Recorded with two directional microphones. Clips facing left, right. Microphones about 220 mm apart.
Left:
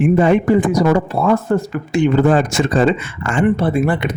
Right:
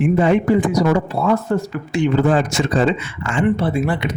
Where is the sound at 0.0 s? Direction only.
50° left (ahead or behind).